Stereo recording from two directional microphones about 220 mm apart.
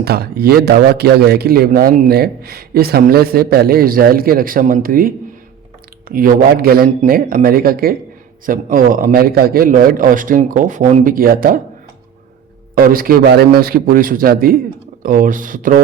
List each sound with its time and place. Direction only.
0.0 s a man's voice: 45° right (ahead or behind)
12.7 s a man's voice: 40° right (ahead or behind)